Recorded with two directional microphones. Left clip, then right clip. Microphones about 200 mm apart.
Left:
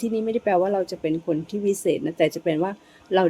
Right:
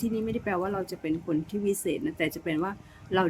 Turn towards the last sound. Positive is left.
turn(degrees=-15)  # may be behind; listen again after turning